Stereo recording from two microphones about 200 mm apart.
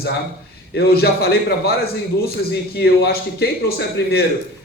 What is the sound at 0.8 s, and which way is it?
A man's voice, 50° left (ahead or behind).